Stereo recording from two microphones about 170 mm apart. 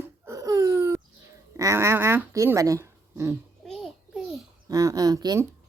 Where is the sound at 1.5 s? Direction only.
15° right (ahead or behind).